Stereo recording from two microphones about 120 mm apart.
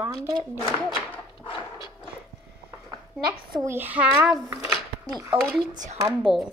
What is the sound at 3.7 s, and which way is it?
Speech, 15° right (ahead or behind).